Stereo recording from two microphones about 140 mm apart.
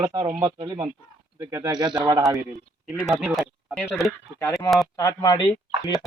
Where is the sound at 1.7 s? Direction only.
30° right (ahead or behind).